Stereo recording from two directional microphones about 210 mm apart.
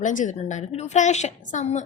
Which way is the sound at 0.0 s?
35° left (ahead or behind).